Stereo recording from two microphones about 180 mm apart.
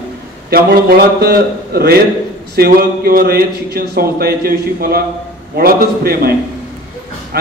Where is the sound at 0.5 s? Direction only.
60° right (ahead or behind).